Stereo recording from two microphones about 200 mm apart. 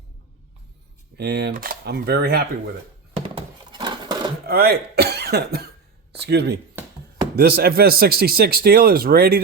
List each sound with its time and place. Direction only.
1.1 s speech: 55° right (ahead or behind)
3.2 s a sound: 25° right (ahead or behind)
4.4 s speech: 50° right (ahead or behind)